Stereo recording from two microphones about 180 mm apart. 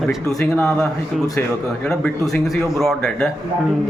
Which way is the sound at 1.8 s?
5° left (ahead or behind).